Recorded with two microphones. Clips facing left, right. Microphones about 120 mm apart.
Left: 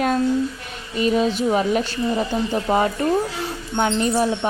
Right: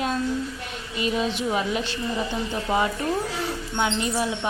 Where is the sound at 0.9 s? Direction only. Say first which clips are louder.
Left 6 dB; 40° left (ahead or behind).